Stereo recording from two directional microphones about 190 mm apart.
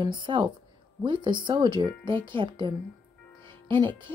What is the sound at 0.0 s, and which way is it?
Speech, 25° right (ahead or behind).